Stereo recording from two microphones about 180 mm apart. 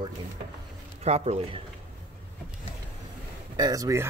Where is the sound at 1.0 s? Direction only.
35° right (ahead or behind).